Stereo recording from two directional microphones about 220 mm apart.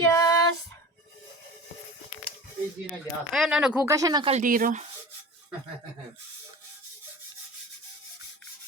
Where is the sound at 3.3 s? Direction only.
Centre (ahead or behind); by 4.3 s 20° right (ahead or behind).